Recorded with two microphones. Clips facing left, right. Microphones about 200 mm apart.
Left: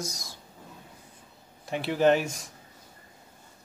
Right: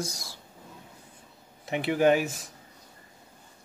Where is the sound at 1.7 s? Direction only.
15° right (ahead or behind).